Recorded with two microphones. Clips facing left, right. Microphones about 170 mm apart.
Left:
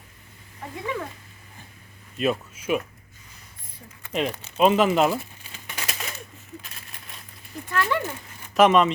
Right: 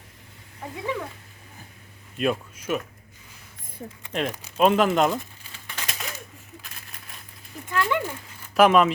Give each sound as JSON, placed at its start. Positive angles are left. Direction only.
{"t": 2.1, "sound": "speech", "side_deg": 0}
{"t": 4.1, "sound": "speech", "side_deg": 0}
{"t": 5.5, "sound": "crumpling", "side_deg": 15}
{"t": 5.9, "sound": "a sound", "side_deg": 0}
{"t": 7.7, "sound": "speech", "side_deg": -15}
{"t": 8.5, "sound": "speech", "side_deg": 0}